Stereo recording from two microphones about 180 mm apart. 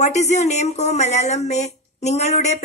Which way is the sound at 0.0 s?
40° left (ahead or behind).